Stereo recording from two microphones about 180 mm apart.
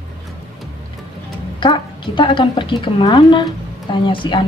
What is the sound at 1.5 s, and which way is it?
A woman's voice, 25° left (ahead or behind).